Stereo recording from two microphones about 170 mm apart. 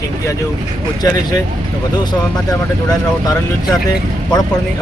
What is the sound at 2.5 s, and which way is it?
Speech, 20° left (ahead or behind).